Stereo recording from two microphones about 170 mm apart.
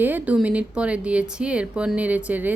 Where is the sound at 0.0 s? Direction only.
10° right (ahead or behind).